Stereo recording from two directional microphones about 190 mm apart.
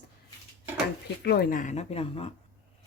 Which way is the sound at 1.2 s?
55° left (ahead or behind).